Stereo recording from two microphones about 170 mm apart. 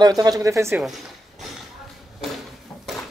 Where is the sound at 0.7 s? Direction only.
Centre (ahead or behind).